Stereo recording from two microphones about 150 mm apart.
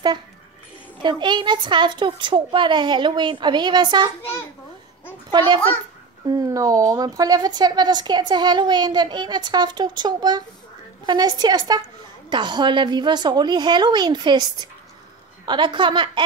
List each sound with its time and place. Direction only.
1.0 s a woman's voice: 30° right (ahead or behind)
5.3 s a woman's voice: 30° right (ahead or behind)